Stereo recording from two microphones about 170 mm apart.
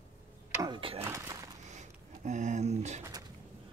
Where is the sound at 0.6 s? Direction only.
30° right (ahead or behind).